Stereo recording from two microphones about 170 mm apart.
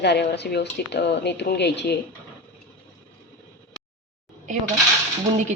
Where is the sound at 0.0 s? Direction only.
80° left.